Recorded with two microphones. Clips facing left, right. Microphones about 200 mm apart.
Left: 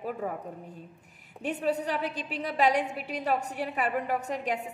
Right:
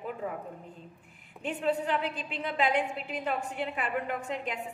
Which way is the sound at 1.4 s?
40° left (ahead or behind).